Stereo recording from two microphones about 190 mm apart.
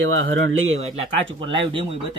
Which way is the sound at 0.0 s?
90° right.